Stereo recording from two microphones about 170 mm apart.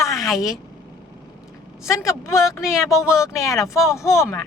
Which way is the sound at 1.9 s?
15° left (ahead or behind).